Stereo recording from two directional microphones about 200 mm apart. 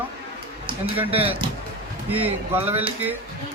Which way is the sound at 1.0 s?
30° right (ahead or behind).